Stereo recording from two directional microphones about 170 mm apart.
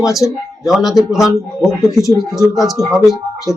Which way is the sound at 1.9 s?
20° left (ahead or behind).